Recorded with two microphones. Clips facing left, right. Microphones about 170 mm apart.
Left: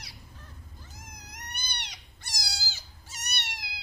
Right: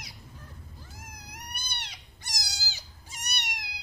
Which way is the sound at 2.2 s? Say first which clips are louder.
Left 1 dB; 15° right (ahead or behind).